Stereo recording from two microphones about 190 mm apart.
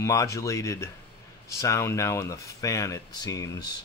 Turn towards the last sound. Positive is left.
turn(degrees=20)  # may be behind; listen again after turning